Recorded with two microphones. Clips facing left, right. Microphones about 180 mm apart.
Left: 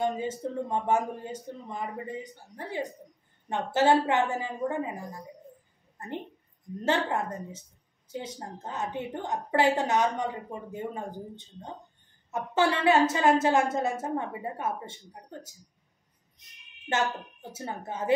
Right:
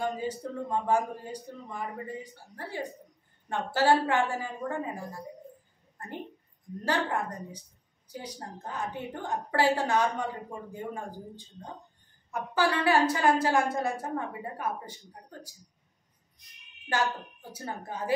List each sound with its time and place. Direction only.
0.0 s a woman's voice: 20° left (ahead or behind)
6.8 s a woman's voice: 25° left (ahead or behind)